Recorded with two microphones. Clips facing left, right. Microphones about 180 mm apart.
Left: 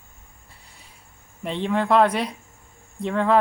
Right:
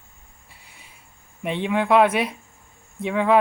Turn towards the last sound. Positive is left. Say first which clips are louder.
# right 1 dB
turn(degrees=-5)  # may be behind; listen again after turning